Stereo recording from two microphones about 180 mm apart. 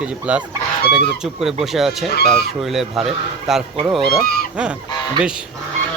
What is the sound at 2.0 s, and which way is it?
Speech, 65° left (ahead or behind).